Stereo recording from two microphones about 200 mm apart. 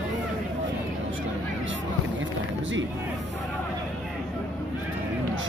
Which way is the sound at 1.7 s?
70° right (ahead or behind).